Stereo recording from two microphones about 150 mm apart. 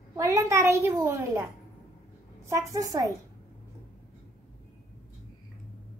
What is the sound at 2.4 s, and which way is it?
Speech, 20° right (ahead or behind).